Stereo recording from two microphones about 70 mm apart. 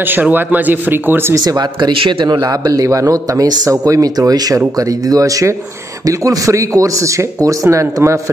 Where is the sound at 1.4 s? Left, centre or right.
Right.